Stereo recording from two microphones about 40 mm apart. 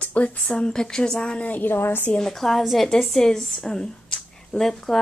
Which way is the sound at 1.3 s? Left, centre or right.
Left.